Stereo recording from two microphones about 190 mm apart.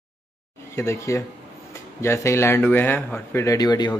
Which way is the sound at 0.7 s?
15° left (ahead or behind).